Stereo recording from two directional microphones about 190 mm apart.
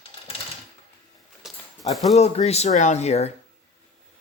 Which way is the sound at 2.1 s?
35° left (ahead or behind).